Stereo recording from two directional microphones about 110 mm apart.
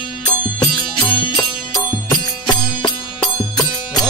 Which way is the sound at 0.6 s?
40° left (ahead or behind).